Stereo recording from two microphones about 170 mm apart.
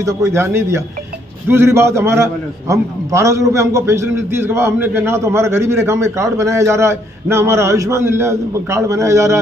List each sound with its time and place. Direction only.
0.0 s a man's voice: 15° right (ahead or behind)